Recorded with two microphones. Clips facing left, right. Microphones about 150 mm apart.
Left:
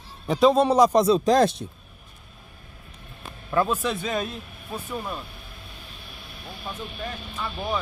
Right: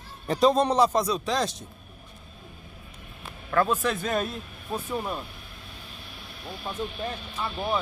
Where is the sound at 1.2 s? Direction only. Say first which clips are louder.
Left 9 dB; 50° left (ahead or behind).